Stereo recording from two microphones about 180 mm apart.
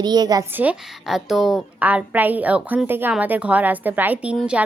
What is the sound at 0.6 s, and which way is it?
A woman's voice, 5° right (ahead or behind).